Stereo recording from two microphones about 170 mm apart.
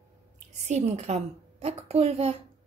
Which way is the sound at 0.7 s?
40° right (ahead or behind).